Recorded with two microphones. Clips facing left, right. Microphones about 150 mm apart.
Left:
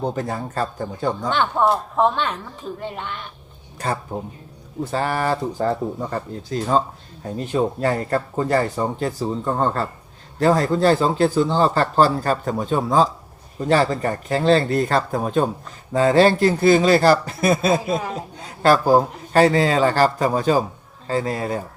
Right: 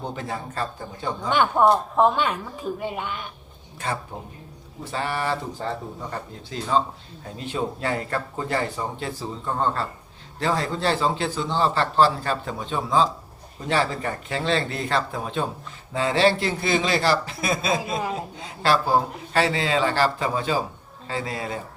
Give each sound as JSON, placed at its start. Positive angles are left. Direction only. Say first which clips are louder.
{"t": 0.0, "sound": "speech", "louder": "left 6 dB", "side_deg": 40}
{"t": 1.3, "sound": "speech", "louder": "right 2 dB", "side_deg": -10}
{"t": 4.1, "sound": "speech", "louder": "left 7 dB", "side_deg": 45}
{"t": 17.8, "sound": "speech", "louder": "left 3 dB", "side_deg": 0}
{"t": 18.6, "sound": "speech", "louder": "left 6 dB", "side_deg": 45}